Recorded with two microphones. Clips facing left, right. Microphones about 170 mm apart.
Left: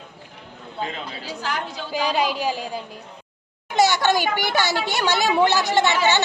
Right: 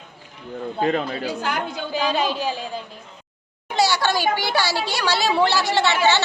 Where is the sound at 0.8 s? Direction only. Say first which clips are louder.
Right 8 dB; 50° right (ahead or behind).